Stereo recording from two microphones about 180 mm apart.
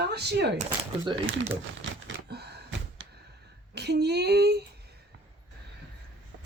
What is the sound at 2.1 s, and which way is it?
Door, 70° right (ahead or behind).